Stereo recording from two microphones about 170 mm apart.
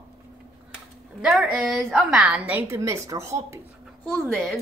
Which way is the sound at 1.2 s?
5° right (ahead or behind).